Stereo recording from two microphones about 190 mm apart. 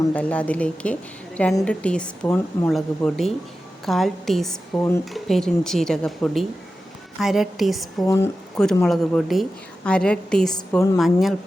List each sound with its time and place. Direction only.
0.1 s a woman's voice: 5° left (ahead or behind)
8.0 s speech: 15° left (ahead or behind)
8.5 s a woman's voice: centre (ahead or behind)
10.9 s a woman's voice: centre (ahead or behind)